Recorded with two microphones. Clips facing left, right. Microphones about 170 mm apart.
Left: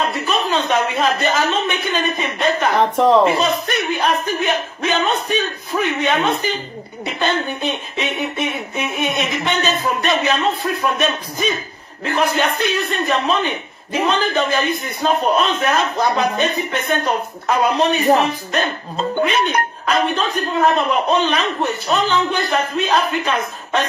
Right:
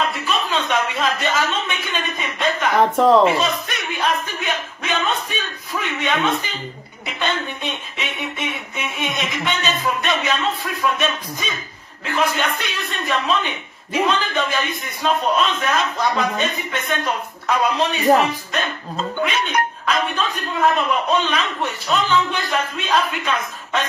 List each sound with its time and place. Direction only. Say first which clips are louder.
0.0 s a woman's voice: left 3 dB; 35° left (ahead or behind)
19.1 s a man's voice: left 3 dB; 35° left (ahead or behind)